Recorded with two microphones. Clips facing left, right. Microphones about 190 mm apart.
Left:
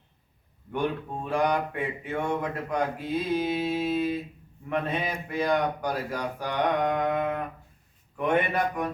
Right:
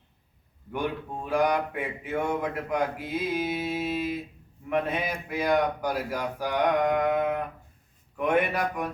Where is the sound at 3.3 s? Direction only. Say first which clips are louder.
Left 2 dB; 10° right (ahead or behind).